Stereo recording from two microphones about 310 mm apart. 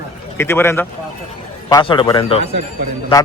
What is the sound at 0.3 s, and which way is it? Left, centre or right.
A man's voice, centre.